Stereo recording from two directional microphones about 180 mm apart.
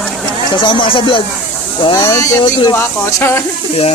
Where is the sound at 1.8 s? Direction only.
25° left (ahead or behind).